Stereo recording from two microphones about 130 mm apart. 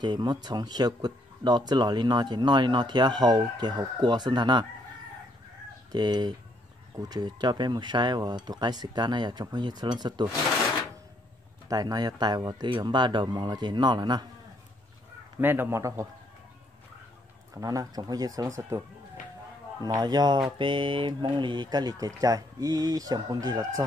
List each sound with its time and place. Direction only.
0.0 s speech: 30° right (ahead or behind)
5.9 s speech: 35° right (ahead or behind)
11.7 s speech: 30° right (ahead or behind)
15.4 s speech: 15° right (ahead or behind)
17.6 s speech: 30° right (ahead or behind)
19.8 s speech: 30° right (ahead or behind)